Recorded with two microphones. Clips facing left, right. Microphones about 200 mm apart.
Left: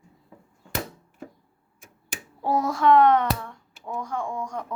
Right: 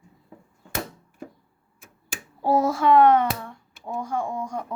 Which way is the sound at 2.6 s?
5° right (ahead or behind).